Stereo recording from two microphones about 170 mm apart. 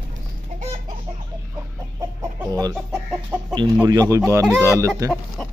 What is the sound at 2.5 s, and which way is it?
Chicken, 20° right (ahead or behind).